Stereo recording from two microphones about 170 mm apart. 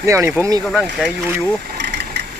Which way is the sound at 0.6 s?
Centre (ahead or behind).